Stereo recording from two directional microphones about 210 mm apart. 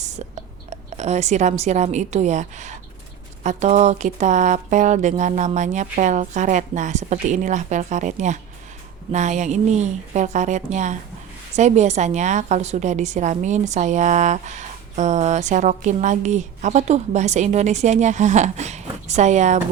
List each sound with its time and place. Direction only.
0.7 s a woman's voice: 30° right (ahead or behind)